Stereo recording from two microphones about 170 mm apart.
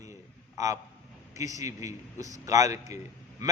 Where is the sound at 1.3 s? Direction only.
20° right (ahead or behind).